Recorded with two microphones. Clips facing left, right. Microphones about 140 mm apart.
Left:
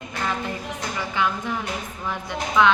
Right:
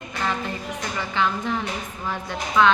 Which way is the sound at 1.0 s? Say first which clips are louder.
Right 1 dB; 10° left (ahead or behind).